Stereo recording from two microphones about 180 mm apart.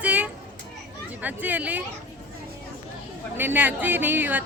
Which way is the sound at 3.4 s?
10° right (ahead or behind).